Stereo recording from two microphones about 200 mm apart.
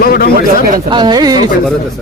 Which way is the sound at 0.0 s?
45° left (ahead or behind).